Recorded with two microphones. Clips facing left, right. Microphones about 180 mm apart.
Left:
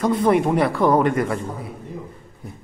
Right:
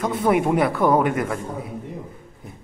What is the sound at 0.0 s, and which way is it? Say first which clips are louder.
A man's voice: left 2 dB; 5° right (ahead or behind).